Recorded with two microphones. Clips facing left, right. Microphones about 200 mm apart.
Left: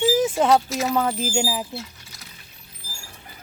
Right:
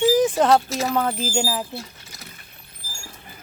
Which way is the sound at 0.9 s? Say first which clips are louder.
Even; 10° left (ahead or behind).